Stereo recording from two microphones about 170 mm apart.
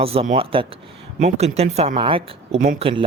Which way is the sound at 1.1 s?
45° right (ahead or behind).